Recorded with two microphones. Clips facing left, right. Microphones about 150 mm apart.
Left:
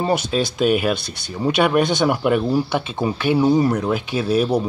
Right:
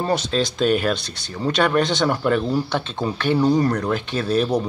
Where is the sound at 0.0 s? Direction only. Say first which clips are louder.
Left 1 dB; 10° left (ahead or behind).